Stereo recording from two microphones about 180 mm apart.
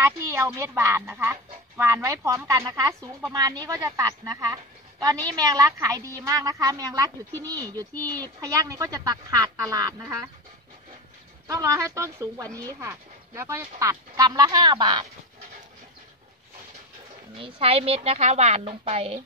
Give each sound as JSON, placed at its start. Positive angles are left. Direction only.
{"t": 0.0, "sound": "speech", "side_deg": -15}
{"t": 3.0, "sound": "speech", "side_deg": 0}
{"t": 3.3, "sound": "a woman's voice", "side_deg": -20}
{"t": 11.4, "sound": "a woman's voice", "side_deg": -20}
{"t": 17.4, "sound": "a woman's voice", "side_deg": -30}